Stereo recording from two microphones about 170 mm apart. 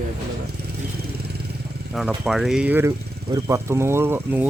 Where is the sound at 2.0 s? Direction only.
Centre (ahead or behind).